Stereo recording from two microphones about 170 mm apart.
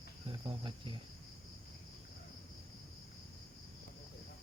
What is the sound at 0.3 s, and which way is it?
Cricket, 25° right (ahead or behind).